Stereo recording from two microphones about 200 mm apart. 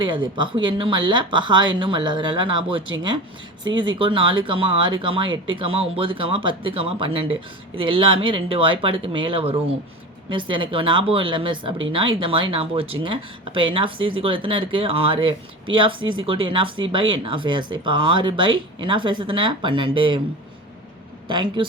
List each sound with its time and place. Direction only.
0.0 s speech: 25° right (ahead or behind)
21.2 s speech: 25° right (ahead or behind)